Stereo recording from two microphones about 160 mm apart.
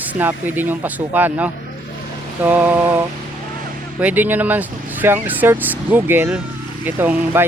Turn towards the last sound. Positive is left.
turn(degrees=-15)  # may be behind; listen again after turning